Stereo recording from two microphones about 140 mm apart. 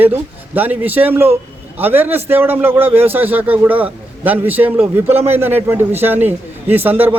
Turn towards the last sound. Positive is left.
turn(degrees=-15)  # may be behind; listen again after turning